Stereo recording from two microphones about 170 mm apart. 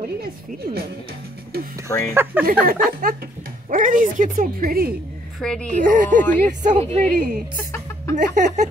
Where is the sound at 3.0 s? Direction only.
60° right (ahead or behind).